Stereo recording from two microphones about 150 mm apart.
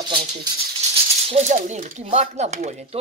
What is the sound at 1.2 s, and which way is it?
Speech, 50° right (ahead or behind).